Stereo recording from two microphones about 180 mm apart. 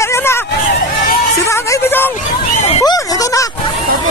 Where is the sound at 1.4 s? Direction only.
15° left (ahead or behind).